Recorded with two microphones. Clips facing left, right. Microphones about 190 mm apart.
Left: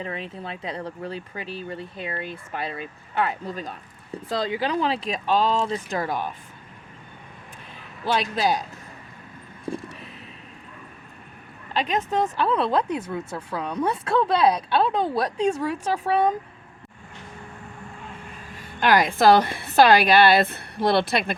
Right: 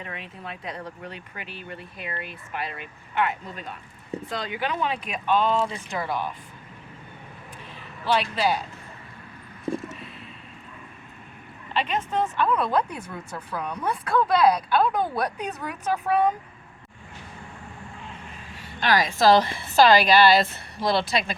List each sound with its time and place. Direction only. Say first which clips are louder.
0.0 s speech: left 5 dB; 30° left (ahead or behind)
6.0 s speech: right 2 dB; 45° left (ahead or behind)
8.0 s speech: even; 45° left (ahead or behind)
11.7 s speech: left 2 dB; 40° left (ahead or behind)
18.5 s a woman's voice: left 4 dB; 50° left (ahead or behind)